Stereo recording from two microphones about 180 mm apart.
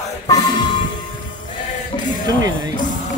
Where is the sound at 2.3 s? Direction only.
20° right (ahead or behind).